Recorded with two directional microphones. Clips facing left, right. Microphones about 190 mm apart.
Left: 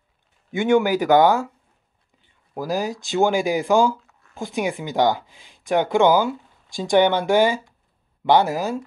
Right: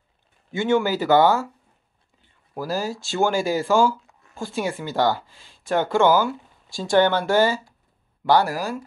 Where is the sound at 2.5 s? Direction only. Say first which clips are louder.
Left 2 dB; 15° left (ahead or behind).